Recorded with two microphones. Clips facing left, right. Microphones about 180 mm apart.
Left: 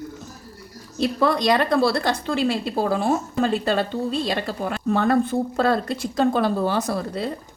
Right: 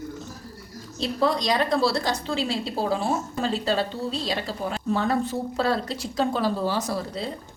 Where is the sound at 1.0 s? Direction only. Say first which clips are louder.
Left 4 dB; 60° left (ahead or behind).